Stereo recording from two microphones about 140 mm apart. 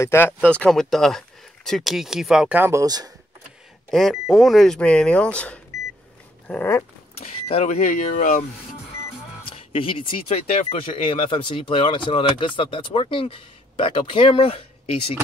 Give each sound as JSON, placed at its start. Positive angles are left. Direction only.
{"t": 0.0, "sound": "speech", "side_deg": 15}
{"t": 3.9, "sound": "speech", "side_deg": 0}
{"t": 6.4, "sound": "dog", "side_deg": 10}
{"t": 7.4, "sound": "speech", "side_deg": 50}
{"t": 9.4, "sound": "speech", "side_deg": 40}